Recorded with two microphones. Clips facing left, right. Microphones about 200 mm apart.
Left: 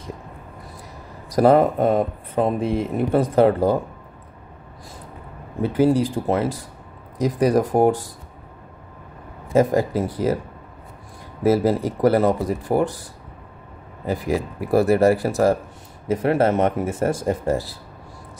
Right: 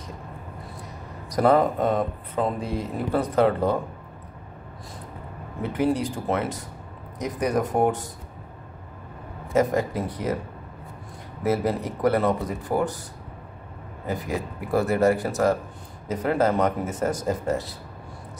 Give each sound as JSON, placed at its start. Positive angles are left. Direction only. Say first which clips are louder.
{"t": 1.3, "sound": "speech", "louder": "left 4 dB", "side_deg": 30}
{"t": 5.6, "sound": "speech", "louder": "left 6 dB", "side_deg": 30}
{"t": 9.5, "sound": "speech", "louder": "left 4 dB", "side_deg": 30}
{"t": 11.4, "sound": "speech", "louder": "left 6 dB", "side_deg": 30}
{"t": 14.7, "sound": "speech", "louder": "left 5 dB", "side_deg": 35}